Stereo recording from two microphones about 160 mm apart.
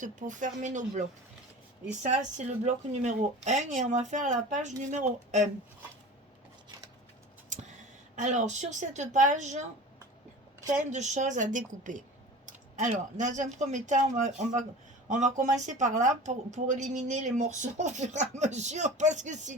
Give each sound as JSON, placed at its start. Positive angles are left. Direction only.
{"t": 0.0, "sound": "speech", "side_deg": -50}
{"t": 2.6, "sound": "speech", "side_deg": -50}
{"t": 8.1, "sound": "speech", "side_deg": -50}
{"t": 10.7, "sound": "speech", "side_deg": -50}